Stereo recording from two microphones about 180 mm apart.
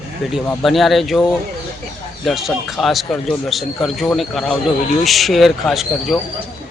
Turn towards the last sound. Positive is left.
turn(degrees=0)  # may be behind; listen again after turning